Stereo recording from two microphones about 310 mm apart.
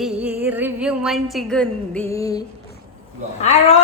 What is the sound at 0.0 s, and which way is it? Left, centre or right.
Music, centre.